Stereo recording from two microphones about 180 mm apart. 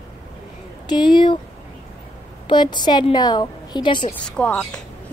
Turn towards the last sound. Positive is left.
turn(degrees=5)  # may be behind; listen again after turning